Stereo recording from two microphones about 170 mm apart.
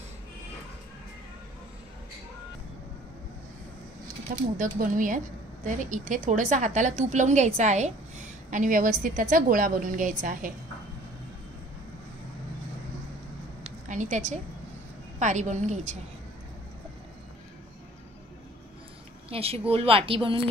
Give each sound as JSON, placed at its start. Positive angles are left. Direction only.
{"t": 4.6, "sound": "a woman's voice", "side_deg": -50}
{"t": 13.7, "sound": "a sound", "side_deg": -45}
{"t": 15.1, "sound": "a woman's voice", "side_deg": -45}
{"t": 19.2, "sound": "speech", "side_deg": -35}